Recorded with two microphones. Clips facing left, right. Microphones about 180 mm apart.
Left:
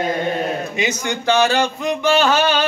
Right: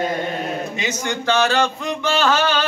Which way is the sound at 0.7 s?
10° left (ahead or behind).